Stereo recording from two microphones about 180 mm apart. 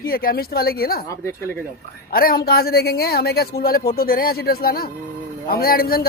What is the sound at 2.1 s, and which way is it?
A woman's voice, 55° left (ahead or behind).